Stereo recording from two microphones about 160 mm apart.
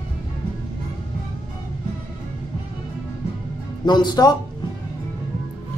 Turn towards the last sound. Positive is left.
turn(degrees=25)  # may be behind; listen again after turning